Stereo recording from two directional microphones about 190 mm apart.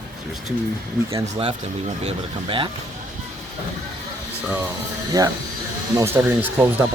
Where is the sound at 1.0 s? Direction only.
30° right (ahead or behind).